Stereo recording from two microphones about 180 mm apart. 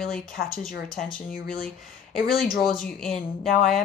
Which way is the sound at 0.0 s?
Centre (ahead or behind).